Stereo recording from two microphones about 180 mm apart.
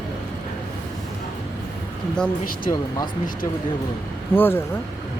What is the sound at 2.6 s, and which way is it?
Speech, 20° left (ahead or behind).